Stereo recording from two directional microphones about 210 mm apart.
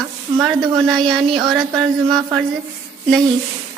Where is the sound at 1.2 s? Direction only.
25° right (ahead or behind).